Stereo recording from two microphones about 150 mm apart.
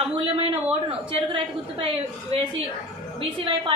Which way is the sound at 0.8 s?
35° right (ahead or behind).